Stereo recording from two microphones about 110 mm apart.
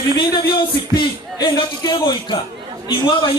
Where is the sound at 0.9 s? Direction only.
45° left (ahead or behind).